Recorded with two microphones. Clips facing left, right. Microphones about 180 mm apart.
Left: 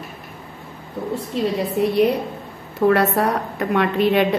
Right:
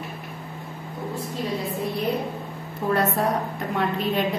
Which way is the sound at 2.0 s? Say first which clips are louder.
Left 8 dB; 75° left (ahead or behind).